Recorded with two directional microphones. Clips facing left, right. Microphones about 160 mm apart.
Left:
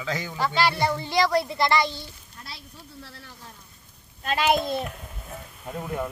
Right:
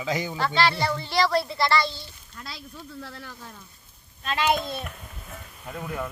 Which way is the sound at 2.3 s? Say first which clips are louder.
Right 4 dB; 90° right.